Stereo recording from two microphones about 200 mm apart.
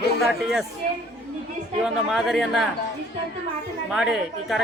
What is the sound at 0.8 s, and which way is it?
Speech, 45° right (ahead or behind).